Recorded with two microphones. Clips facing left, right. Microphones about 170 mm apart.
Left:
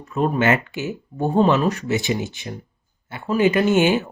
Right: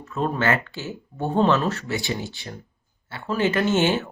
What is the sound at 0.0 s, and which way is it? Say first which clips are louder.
Speech: left 4 dB; 15° left (ahead or behind).